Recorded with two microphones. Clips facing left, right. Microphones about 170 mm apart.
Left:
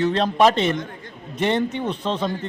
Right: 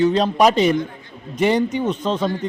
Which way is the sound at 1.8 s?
30° left (ahead or behind).